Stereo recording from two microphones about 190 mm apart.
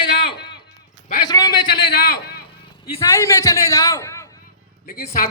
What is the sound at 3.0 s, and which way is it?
A man's voice, 15° left (ahead or behind).